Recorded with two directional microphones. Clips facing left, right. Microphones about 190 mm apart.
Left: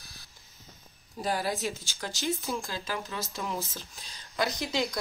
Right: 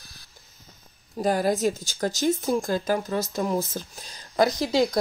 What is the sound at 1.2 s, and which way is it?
Speech, 45° right (ahead or behind).